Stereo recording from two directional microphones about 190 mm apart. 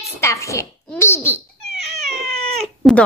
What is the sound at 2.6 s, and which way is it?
Cat, centre (ahead or behind).